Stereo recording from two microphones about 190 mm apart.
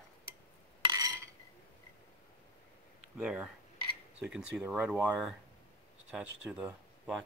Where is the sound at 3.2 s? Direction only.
5° right (ahead or behind).